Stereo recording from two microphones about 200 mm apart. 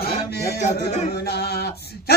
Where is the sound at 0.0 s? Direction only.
50° left (ahead or behind).